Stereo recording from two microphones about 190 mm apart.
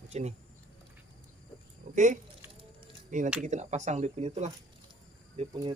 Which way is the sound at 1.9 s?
40° right (ahead or behind).